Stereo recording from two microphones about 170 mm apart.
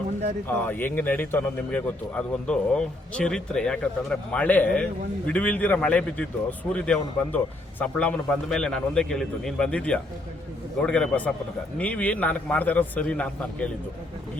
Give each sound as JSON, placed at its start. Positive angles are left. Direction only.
{"t": 0.4, "sound": "speech", "side_deg": 10}